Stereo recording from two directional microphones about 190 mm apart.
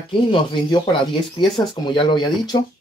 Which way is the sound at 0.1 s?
25° left (ahead or behind).